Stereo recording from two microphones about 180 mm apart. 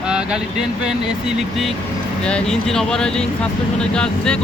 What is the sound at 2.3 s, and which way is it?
Speech, 5° left (ahead or behind).